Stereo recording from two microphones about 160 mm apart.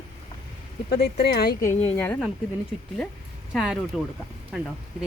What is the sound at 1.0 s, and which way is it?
Speech, 90° left.